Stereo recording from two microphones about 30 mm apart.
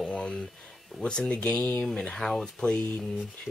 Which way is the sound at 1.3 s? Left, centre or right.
Left.